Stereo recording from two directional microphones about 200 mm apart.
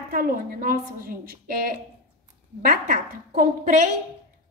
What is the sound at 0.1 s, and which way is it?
A woman's voice, 45° right (ahead or behind).